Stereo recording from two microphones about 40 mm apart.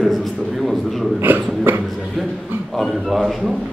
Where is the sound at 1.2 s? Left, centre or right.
Right.